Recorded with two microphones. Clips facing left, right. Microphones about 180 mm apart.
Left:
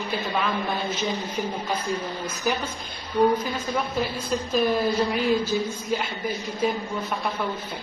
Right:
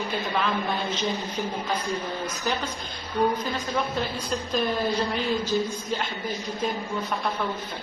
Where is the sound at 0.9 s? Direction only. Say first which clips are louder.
Left 1 dB; 10° left (ahead or behind).